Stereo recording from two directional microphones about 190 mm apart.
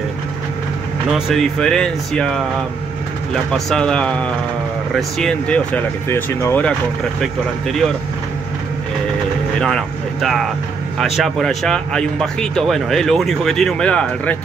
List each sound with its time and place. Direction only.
1.1 s speech: centre (ahead or behind)
3.5 s speech: 5° left (ahead or behind)
9.6 s speech: centre (ahead or behind)